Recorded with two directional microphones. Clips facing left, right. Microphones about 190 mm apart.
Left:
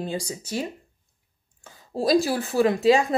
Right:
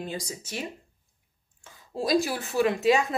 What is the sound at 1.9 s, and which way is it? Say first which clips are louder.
Speech: left 4 dB; 35° left (ahead or behind).